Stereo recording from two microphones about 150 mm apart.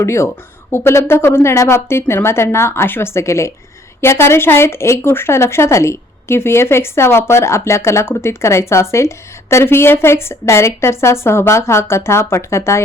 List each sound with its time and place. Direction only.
0.0 s speech: 20° left (ahead or behind)